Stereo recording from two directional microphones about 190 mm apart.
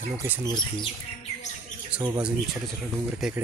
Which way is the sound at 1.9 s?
10° right (ahead or behind).